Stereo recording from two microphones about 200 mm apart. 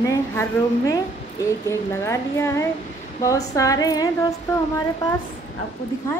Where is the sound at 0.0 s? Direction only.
15° left (ahead or behind).